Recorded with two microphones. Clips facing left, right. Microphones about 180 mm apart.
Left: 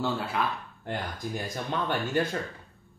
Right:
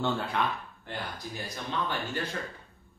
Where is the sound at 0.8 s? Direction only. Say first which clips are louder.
Left 5 dB; 50° left (ahead or behind).